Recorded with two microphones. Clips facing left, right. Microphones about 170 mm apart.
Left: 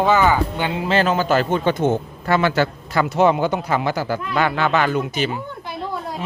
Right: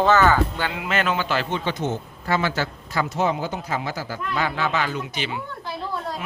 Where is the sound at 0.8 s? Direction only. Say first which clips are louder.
Left 6 dB; 30° left (ahead or behind).